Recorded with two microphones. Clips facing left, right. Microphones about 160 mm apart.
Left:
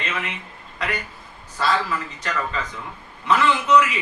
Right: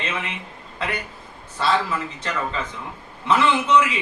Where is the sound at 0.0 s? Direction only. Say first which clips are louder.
Right 1 dB; 25° right (ahead or behind).